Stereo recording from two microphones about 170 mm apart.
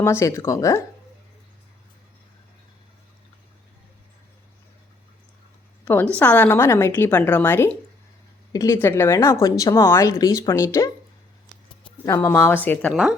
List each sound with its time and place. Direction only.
0.0 s a woman's voice: 15° left (ahead or behind)
5.8 s a woman's voice: 10° left (ahead or behind)
12.0 s a woman's voice: 15° left (ahead or behind)
12.9 s speech: 5° right (ahead or behind)